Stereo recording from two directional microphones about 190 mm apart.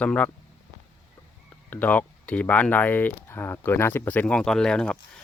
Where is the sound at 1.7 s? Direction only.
10° left (ahead or behind).